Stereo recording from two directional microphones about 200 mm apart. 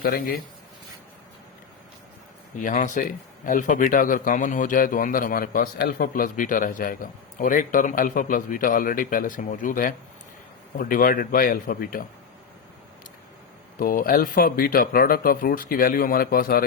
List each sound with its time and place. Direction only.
0.0 s speech: 50° left (ahead or behind)
2.6 s speech: 40° left (ahead or behind)
13.7 s speech: 45° left (ahead or behind)